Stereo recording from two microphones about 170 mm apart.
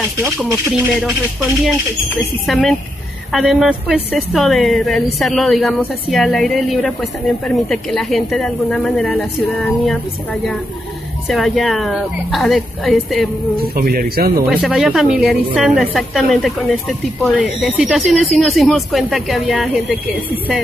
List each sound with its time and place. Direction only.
2.4 s speech: centre (ahead or behind)
11.2 s speech: centre (ahead or behind)
13.6 s speech: 60° right (ahead or behind)
14.5 s speech: centre (ahead or behind)